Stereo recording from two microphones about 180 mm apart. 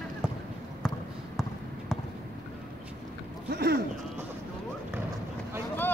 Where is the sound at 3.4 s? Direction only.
65° right (ahead or behind).